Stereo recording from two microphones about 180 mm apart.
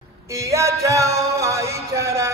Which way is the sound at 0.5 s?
15° right (ahead or behind).